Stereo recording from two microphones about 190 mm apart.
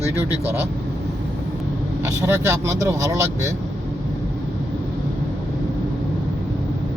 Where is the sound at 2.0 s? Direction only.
15° right (ahead or behind).